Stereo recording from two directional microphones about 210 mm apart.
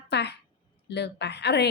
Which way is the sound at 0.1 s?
55° left (ahead or behind).